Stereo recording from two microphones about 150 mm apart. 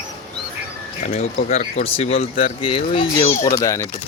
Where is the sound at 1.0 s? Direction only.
50° left (ahead or behind).